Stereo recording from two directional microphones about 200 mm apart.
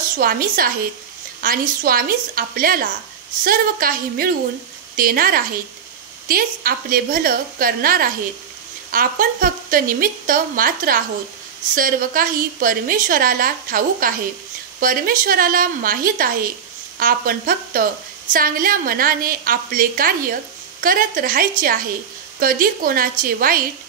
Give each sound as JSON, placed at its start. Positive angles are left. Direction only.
{"t": 0.1, "sound": "a woman's voice", "side_deg": -45}